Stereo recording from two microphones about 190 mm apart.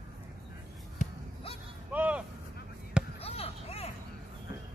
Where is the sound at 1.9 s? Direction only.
5° right (ahead or behind).